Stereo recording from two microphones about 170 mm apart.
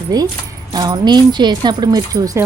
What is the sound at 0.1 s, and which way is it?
A woman's voice, 20° right (ahead or behind).